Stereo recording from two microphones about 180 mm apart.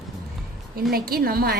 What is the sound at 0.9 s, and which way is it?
Speech, 55° right (ahead or behind).